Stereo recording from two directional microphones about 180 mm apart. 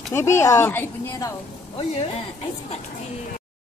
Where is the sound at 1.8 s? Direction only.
35° left (ahead or behind).